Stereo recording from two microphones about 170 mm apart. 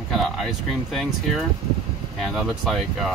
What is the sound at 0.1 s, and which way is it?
Speech, centre (ahead or behind).